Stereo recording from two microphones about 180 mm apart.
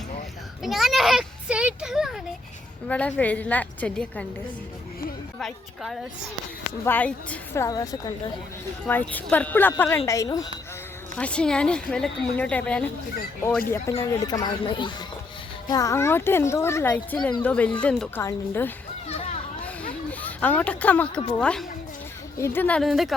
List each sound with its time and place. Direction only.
0.6 s a woman's voice: centre (ahead or behind)
2.8 s a child's voice: 10° left (ahead or behind)
5.4 s a woman's voice: centre (ahead or behind); by 8.1 s 20° left (ahead or behind)
8.9 s a child's voice: 10° left (ahead or behind)
11.2 s a woman's voice: 5° left (ahead or behind)
13.9 s a child's voice: 20° left (ahead or behind)
19.0 s children playing: 35° left (ahead or behind)
20.1 s a child's voice: 10° left (ahead or behind)